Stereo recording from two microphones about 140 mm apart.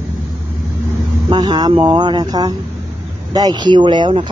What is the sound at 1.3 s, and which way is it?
Speech, 30° right (ahead or behind).